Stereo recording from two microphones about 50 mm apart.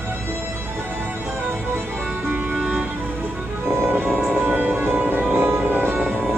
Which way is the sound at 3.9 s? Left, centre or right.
Right.